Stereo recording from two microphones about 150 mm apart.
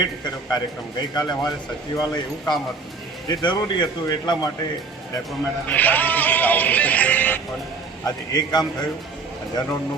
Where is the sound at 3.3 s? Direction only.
30° left (ahead or behind).